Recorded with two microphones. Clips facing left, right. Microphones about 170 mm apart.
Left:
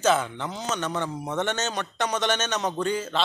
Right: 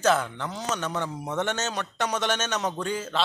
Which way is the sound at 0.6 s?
5° right (ahead or behind).